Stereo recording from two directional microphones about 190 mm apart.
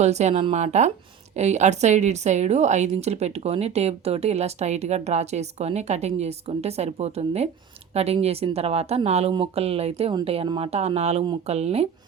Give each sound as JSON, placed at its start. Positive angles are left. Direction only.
{"t": 0.0, "sound": "a woman's voice", "side_deg": -35}